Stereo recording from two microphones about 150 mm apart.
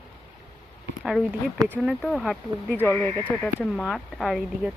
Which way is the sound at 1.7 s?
Centre (ahead or behind).